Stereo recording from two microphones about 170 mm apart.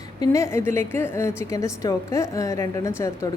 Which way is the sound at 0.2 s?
15° left (ahead or behind).